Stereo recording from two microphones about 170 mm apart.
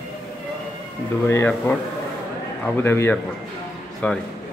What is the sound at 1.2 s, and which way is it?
Speech, 10° left (ahead or behind).